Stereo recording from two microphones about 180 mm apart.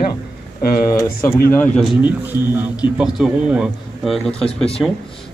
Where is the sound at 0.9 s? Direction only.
15° left (ahead or behind).